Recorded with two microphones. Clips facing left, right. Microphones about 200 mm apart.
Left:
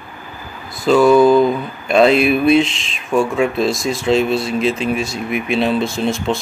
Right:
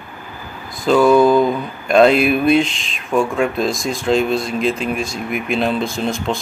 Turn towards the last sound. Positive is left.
turn(degrees=0)  # may be behind; listen again after turning